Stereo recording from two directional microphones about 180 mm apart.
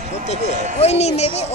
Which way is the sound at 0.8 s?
35° left (ahead or behind).